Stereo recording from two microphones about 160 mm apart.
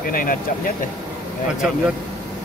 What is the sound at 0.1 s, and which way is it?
Speech, 60° left (ahead or behind).